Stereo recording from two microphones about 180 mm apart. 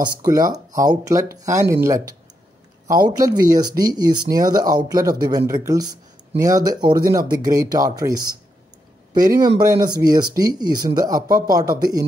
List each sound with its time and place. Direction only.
0.0 s speech: 20° right (ahead or behind)
9.1 s speech: 20° right (ahead or behind)